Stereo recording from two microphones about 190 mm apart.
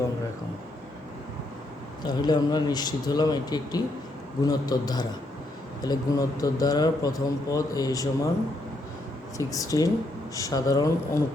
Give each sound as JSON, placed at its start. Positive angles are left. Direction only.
{"t": 2.0, "sound": "a man's voice", "side_deg": 20}
{"t": 9.4, "sound": "speech", "side_deg": 15}